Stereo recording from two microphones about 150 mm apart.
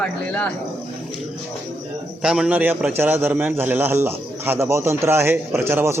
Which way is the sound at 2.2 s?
5° right (ahead or behind).